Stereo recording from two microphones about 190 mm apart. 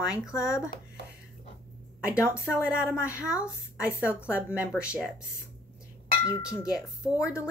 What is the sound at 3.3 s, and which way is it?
Speech, 15° left (ahead or behind).